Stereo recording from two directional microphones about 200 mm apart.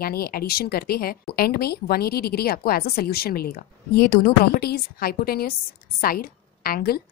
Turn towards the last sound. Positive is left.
turn(degrees=50)  # may be behind; listen again after turning